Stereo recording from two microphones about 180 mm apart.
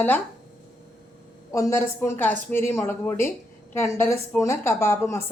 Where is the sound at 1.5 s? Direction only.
15° left (ahead or behind).